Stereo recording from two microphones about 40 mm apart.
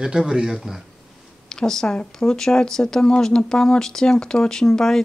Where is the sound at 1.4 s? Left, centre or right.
Centre.